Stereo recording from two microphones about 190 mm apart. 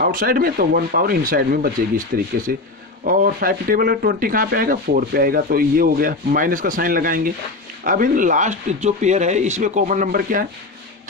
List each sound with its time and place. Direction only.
0.0 s speech: 50° right (ahead or behind)